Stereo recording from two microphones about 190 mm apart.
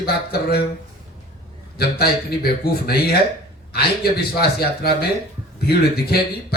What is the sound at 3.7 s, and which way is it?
Speech, 55° left (ahead or behind).